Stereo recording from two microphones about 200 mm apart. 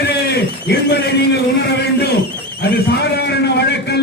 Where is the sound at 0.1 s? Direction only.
55° left (ahead or behind).